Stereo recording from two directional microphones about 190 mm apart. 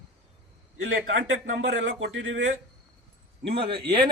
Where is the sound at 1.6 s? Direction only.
70° right (ahead or behind).